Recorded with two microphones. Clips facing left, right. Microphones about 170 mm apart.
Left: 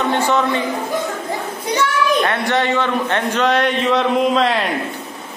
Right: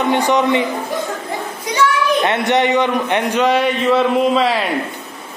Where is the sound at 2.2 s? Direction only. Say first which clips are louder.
Right 3 dB; 20° right (ahead or behind); by 4.6 s 5° right (ahead or behind).